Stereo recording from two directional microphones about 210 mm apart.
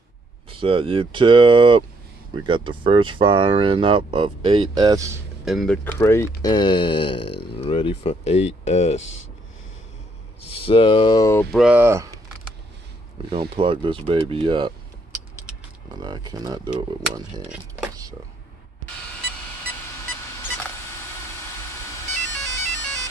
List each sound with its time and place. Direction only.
0.5 s speech: 25° right (ahead or behind)
5.4 s speech: centre (ahead or behind)
5.9 s speech: 15° left (ahead or behind); by 9.0 s 30° left (ahead or behind)
10.4 s speech: 25° left (ahead or behind)
11.5 s speech: 5° right (ahead or behind)
13.3 s speech: 25° right (ahead or behind)
15.9 s speech: 20° right (ahead or behind)
17.4 s speech: 5° right (ahead or behind)
20.4 s camera: 10° left (ahead or behind)